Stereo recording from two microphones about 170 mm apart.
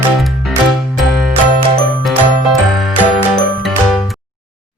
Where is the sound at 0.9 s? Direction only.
Centre (ahead or behind).